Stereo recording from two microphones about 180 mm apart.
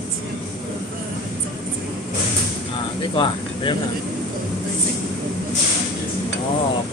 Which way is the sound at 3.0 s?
25° left (ahead or behind).